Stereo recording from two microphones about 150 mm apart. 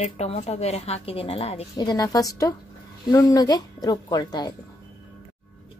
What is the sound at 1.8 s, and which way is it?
A woman's voice, 25° left (ahead or behind).